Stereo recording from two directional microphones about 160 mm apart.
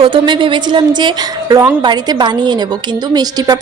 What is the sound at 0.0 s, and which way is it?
A woman's voice, 30° right (ahead or behind).